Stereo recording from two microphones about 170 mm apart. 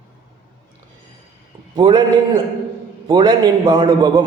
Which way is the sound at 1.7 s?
25° right (ahead or behind).